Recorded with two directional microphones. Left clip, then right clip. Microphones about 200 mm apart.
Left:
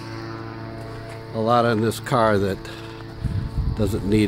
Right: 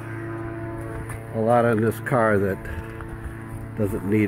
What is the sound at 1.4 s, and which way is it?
Speech, 15° left (ahead or behind).